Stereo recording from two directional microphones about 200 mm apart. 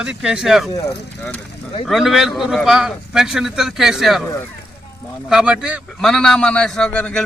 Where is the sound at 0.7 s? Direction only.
20° left (ahead or behind).